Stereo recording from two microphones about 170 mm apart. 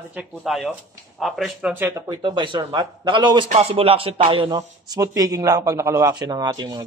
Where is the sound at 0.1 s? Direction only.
5° right (ahead or behind).